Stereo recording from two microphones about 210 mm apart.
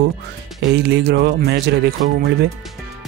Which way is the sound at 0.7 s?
50° right (ahead or behind).